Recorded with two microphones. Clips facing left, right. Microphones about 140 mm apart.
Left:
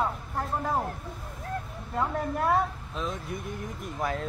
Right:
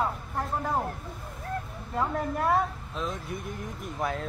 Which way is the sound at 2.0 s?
Centre (ahead or behind).